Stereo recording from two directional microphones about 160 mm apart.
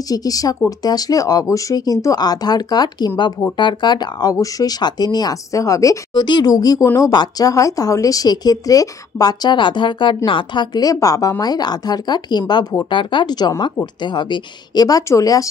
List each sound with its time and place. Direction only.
0.1 s speech: 25° left (ahead or behind)